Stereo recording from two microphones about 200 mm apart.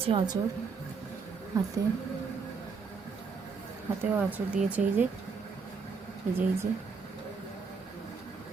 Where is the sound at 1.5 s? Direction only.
15° right (ahead or behind).